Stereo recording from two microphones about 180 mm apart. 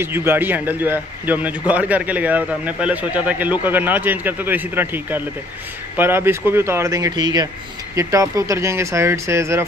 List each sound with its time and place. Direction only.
0.0 s a man's voice: 10° right (ahead or behind)